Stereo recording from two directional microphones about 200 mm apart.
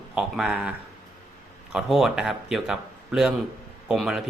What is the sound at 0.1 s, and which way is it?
Speech, 5° right (ahead or behind).